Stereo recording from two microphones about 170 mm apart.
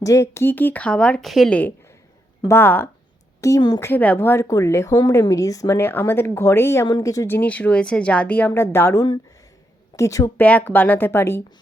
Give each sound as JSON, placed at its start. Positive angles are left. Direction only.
{"t": 0.0, "sound": "a woman's voice", "side_deg": 20}
{"t": 10.4, "sound": "speech", "side_deg": 10}